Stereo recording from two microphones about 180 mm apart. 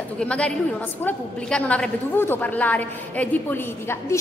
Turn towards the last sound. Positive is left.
turn(degrees=10)  # may be behind; listen again after turning